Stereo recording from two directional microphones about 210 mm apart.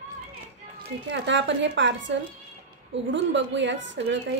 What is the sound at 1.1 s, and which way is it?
A woman's voice, 60° right (ahead or behind).